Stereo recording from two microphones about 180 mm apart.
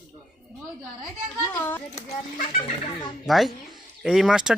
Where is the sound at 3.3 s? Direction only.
Centre (ahead or behind).